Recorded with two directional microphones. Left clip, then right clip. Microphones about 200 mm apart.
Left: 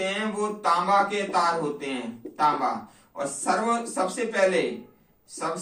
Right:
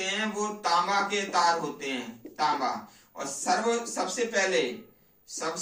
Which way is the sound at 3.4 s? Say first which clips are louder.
Left 2 dB; 20° right (ahead or behind).